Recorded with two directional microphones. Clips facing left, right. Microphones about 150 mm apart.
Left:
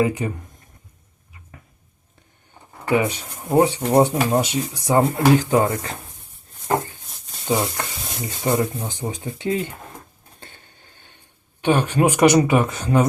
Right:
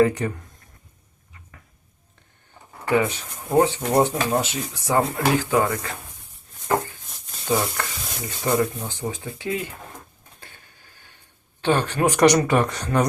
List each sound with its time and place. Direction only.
0.0 s speech: 5° left (ahead or behind)
2.8 s speech: 15° left (ahead or behind)
7.4 s stir: 20° left (ahead or behind)
9.0 s speech: 25° left (ahead or behind)
10.4 s a sound: 25° left (ahead or behind)
11.6 s speech: 15° left (ahead or behind)